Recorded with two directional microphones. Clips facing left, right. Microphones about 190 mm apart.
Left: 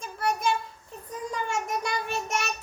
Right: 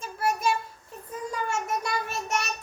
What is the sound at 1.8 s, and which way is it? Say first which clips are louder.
Child singing: left 1 dB; 5° right (ahead or behind).